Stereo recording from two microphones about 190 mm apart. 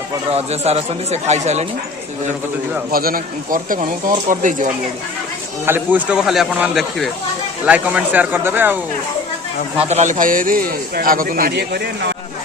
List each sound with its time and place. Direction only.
0.3 s speech: 35° right (ahead or behind)
2.9 s a man's voice: 50° right (ahead or behind)
5.6 s speech: 10° right (ahead or behind)
9.7 s a man's voice: 35° right (ahead or behind); by 12.1 s 60° right (ahead or behind)